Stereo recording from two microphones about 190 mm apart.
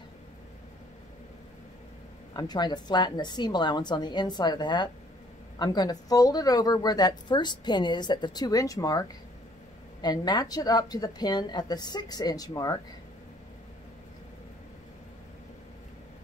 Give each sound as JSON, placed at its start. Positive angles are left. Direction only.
{"t": 2.3, "sound": "speech", "side_deg": 20}